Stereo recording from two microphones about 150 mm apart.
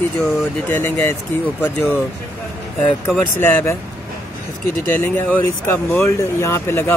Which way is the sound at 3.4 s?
15° left (ahead or behind).